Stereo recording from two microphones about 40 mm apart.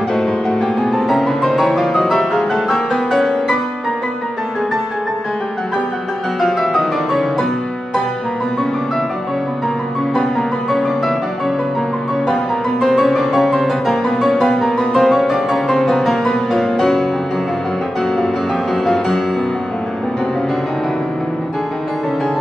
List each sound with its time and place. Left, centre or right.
0.5 s music: centre
0.9 s music: centre
6.4 s music: centre
10.7 s music: centre
12.8 s music: centre
14.9 s music: centre